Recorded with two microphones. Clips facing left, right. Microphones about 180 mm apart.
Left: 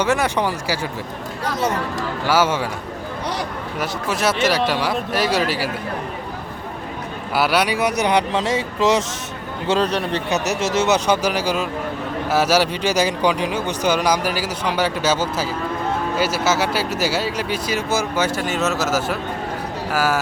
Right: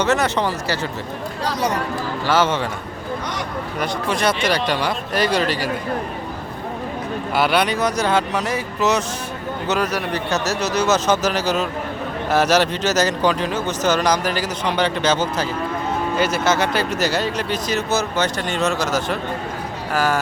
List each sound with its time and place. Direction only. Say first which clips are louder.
0.0 s speech: even; 10° left (ahead or behind)
2.2 s speech: even; 10° left (ahead or behind)
3.8 s speech: right 1 dB; 5° left (ahead or behind)
7.3 s a man's voice: even; 5° left (ahead or behind); by 10.2 s 30° left (ahead or behind)
10.2 s speech: left 1 dB; 15° left (ahead or behind)